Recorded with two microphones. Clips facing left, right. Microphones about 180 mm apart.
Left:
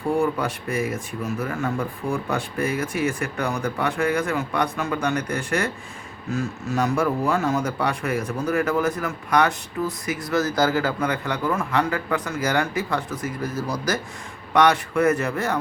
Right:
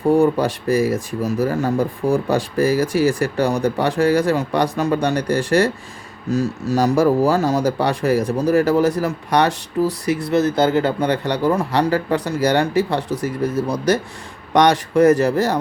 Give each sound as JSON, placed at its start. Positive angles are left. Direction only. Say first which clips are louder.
{"t": 0.1, "sound": "speech", "louder": "right 7 dB", "side_deg": -35}